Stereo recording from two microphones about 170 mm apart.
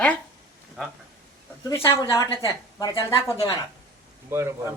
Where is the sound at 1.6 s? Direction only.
15° left (ahead or behind).